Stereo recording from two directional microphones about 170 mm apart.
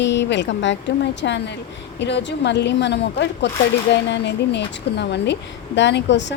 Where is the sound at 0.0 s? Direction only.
90° left.